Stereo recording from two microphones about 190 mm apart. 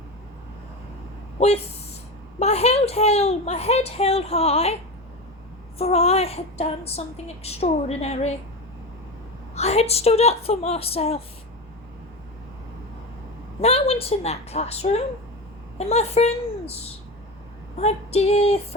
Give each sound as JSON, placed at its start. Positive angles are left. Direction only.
{"t": 1.4, "sound": "speech", "side_deg": 35}
{"t": 5.8, "sound": "speech", "side_deg": 35}
{"t": 9.6, "sound": "speech", "side_deg": 35}
{"t": 13.6, "sound": "speech", "side_deg": 35}